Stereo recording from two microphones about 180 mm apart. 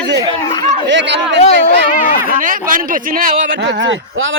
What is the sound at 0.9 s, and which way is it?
Speech, 80° right.